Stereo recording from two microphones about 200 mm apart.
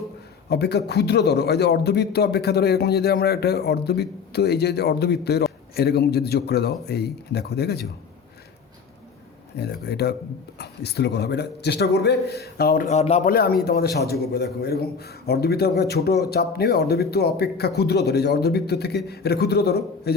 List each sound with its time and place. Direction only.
0.5 s a man's voice: 55° left (ahead or behind)
9.6 s a man's voice: 55° left (ahead or behind); by 13.3 s 35° left (ahead or behind)
13.3 s a man's voice: 50° left (ahead or behind)